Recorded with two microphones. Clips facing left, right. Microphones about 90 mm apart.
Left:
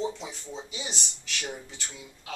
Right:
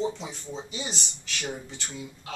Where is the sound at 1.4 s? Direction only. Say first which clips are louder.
Right 2 dB; 15° right (ahead or behind).